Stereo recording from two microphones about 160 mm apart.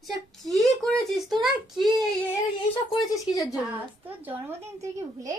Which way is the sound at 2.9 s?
20° left (ahead or behind).